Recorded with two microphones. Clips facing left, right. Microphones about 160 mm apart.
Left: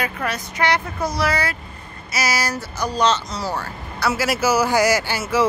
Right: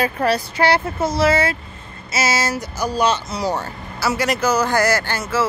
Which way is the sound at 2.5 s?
10° right (ahead or behind).